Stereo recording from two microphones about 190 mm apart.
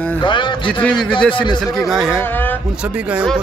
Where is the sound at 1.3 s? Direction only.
25° left (ahead or behind).